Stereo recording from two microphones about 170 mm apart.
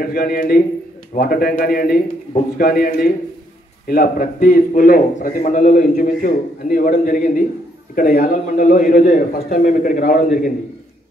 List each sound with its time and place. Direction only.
0.0 s a man's voice: 60° left (ahead or behind)